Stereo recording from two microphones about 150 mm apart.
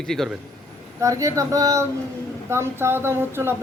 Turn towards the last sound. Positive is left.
turn(degrees=-15)  # may be behind; listen again after turning